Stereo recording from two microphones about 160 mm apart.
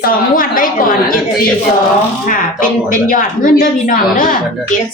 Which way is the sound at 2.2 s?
60° left (ahead or behind).